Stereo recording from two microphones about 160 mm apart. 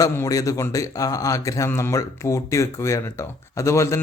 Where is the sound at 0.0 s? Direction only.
20° left (ahead or behind).